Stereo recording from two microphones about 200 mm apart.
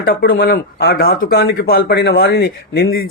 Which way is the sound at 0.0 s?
50° left (ahead or behind).